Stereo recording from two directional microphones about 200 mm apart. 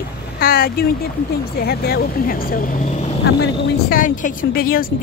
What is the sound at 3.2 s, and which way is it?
Speech, 55° left (ahead or behind).